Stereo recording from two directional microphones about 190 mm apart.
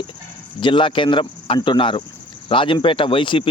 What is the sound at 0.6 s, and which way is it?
Speech, 25° left (ahead or behind).